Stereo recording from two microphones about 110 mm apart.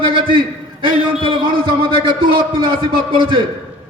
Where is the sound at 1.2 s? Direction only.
50° right (ahead or behind).